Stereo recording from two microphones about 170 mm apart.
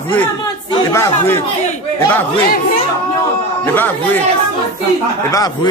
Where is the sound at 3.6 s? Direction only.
10° left (ahead or behind).